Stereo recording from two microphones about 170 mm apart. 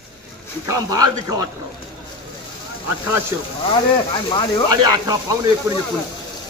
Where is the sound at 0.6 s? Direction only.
20° right (ahead or behind).